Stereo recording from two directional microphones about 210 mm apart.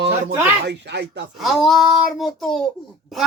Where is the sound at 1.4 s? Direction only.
Centre (ahead or behind).